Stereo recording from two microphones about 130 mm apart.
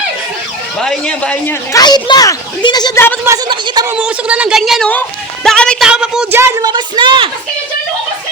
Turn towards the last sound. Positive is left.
turn(degrees=-40)  # may be behind; listen again after turning